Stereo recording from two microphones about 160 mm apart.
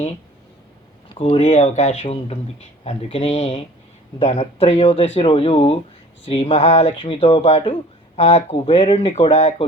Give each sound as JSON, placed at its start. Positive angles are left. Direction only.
{"t": 1.2, "sound": "speech", "side_deg": 40}